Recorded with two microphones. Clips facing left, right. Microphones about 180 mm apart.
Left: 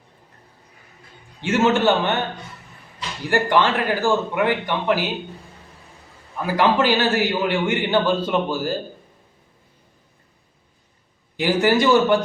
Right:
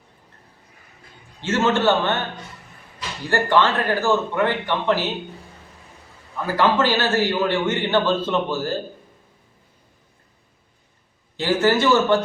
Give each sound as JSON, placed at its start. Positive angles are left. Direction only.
{"t": 1.4, "sound": "a man's voice", "side_deg": 15}
{"t": 3.2, "sound": "a man's voice", "side_deg": 15}
{"t": 6.4, "sound": "a man's voice", "side_deg": 15}
{"t": 11.3, "sound": "a man's voice", "side_deg": 15}